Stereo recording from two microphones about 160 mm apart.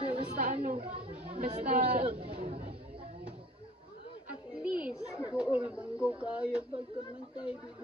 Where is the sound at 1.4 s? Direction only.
45° right (ahead or behind).